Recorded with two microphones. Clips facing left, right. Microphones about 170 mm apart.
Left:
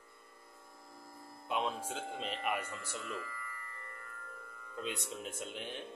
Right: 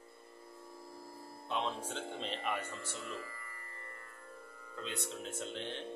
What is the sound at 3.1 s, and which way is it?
Speech, 30° right (ahead or behind).